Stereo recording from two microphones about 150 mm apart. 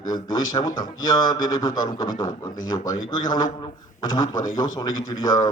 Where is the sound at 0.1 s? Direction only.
25° left (ahead or behind).